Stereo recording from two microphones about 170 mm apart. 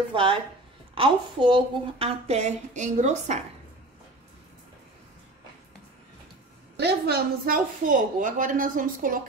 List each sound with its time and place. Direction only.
0.1 s a woman's voice: 30° right (ahead or behind)
6.8 s a woman's voice: 70° right (ahead or behind); by 9.2 s 50° right (ahead or behind)